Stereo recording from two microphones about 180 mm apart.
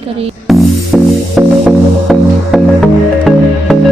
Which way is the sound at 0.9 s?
Centre (ahead or behind).